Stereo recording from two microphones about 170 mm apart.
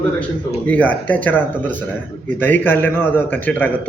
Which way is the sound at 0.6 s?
10° left (ahead or behind).